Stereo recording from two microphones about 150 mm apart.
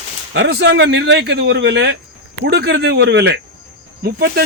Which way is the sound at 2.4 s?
90° right.